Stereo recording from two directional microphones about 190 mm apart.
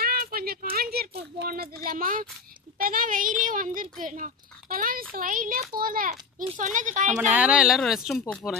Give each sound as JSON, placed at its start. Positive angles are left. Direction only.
{"t": 0.0, "sound": "a sound", "side_deg": -50}
{"t": 1.4, "sound": "speech", "side_deg": -50}
{"t": 7.2, "sound": "speech", "side_deg": -5}